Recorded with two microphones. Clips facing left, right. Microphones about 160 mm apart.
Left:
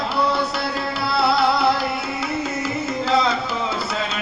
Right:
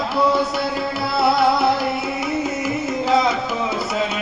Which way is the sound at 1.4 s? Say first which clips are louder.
Right 1 dB; 20° right (ahead or behind).